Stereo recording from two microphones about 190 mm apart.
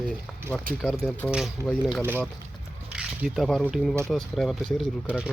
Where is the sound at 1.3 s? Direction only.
5° right (ahead or behind).